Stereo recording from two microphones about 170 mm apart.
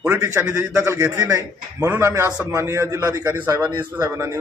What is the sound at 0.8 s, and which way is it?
A man's voice, 20° right (ahead or behind).